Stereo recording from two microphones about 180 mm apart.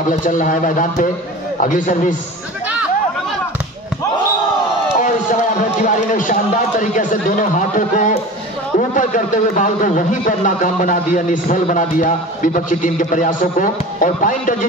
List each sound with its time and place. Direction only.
0.1 s a man's voice: 45° left (ahead or behind)
5.0 s a man's voice: 45° left (ahead or behind)